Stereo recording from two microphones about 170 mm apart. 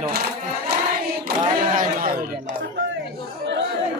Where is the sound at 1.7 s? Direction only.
55° right (ahead or behind).